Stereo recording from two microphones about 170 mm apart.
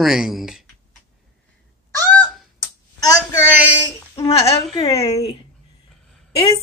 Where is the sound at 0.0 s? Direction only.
Centre (ahead or behind).